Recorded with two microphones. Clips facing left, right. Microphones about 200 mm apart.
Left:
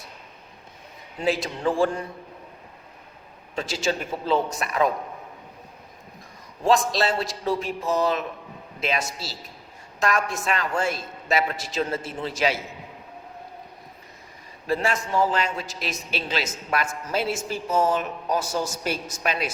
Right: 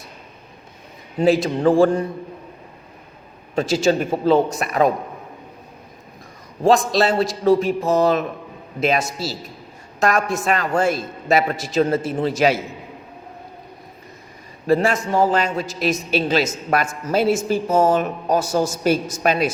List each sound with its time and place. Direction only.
1.2 s a man's voice: 40° right (ahead or behind)
3.5 s a man's voice: 45° right (ahead or behind)
6.6 s a man's voice: 40° right (ahead or behind)
14.7 s a man's voice: 45° right (ahead or behind)